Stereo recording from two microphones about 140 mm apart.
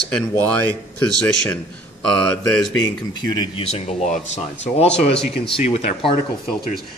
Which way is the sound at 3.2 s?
30° left (ahead or behind).